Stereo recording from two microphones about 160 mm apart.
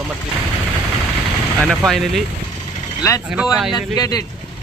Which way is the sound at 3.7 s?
25° left (ahead or behind).